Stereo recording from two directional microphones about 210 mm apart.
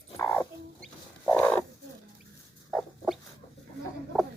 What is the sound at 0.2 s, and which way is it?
Dog, 10° left (ahead or behind).